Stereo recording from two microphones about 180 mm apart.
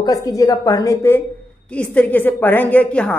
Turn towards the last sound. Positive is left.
turn(degrees=5)  # may be behind; listen again after turning